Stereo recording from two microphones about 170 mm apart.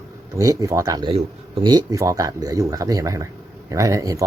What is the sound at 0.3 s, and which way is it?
Speech, 20° right (ahead or behind).